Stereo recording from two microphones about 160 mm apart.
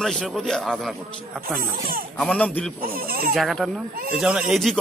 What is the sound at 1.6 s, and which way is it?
Speech, 60° right (ahead or behind).